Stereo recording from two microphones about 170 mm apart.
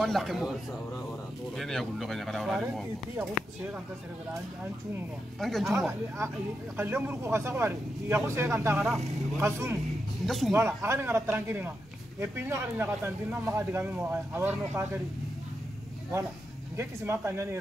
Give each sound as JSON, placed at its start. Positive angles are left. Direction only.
{"t": 0.0, "sound": "speech", "side_deg": 0}
{"t": 1.6, "sound": "speech", "side_deg": 0}
{"t": 2.6, "sound": "speech", "side_deg": -10}
{"t": 5.4, "sound": "speech", "side_deg": 0}
{"t": 5.9, "sound": "speech", "side_deg": -15}
{"t": 10.2, "sound": "speech", "side_deg": 0}
{"t": 10.5, "sound": "speech", "side_deg": -15}
{"t": 16.7, "sound": "speech", "side_deg": -15}